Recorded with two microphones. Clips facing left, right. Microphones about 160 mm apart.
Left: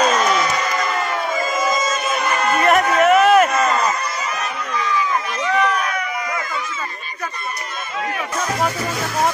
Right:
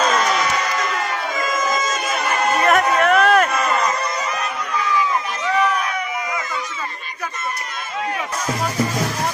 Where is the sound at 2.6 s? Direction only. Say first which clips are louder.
Left 2 dB; centre (ahead or behind).